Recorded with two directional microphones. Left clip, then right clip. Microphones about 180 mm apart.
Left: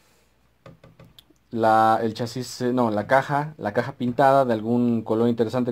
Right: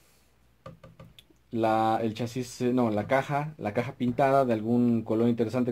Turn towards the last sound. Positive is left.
turn(degrees=30)  # may be behind; listen again after turning